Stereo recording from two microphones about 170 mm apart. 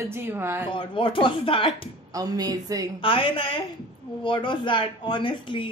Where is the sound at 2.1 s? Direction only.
20° right (ahead or behind).